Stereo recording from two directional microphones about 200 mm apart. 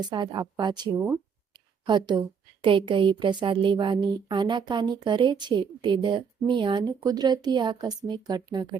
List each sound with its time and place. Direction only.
0.0 s a woman's voice: 20° right (ahead or behind)